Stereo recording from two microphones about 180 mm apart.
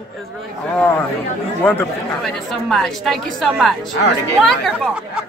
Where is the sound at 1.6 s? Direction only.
10° left (ahead or behind).